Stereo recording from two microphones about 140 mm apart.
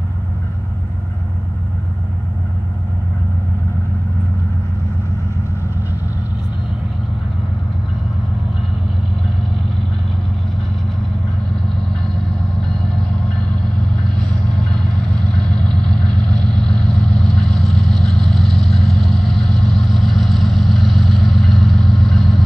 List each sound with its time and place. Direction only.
15.3 s vehicle: 5° left (ahead or behind)